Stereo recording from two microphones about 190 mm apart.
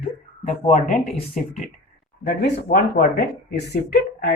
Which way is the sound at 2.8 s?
55° left (ahead or behind).